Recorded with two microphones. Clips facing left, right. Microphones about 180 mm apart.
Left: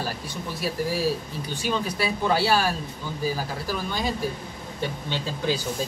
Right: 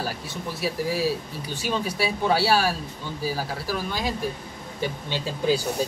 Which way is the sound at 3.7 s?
Centre (ahead or behind).